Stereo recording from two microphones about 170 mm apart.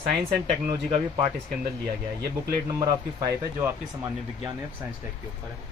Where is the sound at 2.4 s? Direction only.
20° right (ahead or behind).